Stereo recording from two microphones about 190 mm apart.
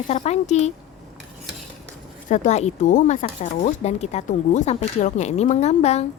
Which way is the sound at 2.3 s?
35° left (ahead or behind).